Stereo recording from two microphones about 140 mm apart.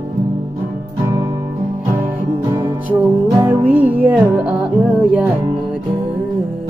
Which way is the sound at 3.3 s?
30° right (ahead or behind).